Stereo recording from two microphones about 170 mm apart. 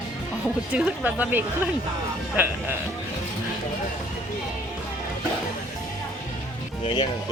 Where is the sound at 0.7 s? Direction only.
10° right (ahead or behind).